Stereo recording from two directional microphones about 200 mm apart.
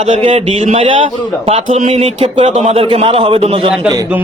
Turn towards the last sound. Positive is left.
turn(degrees=-15)  # may be behind; listen again after turning